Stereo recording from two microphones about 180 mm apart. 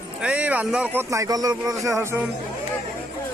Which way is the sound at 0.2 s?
5° right (ahead or behind).